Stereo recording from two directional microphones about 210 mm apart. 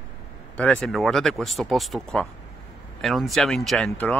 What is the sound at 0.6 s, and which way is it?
Speech, 5° left (ahead or behind).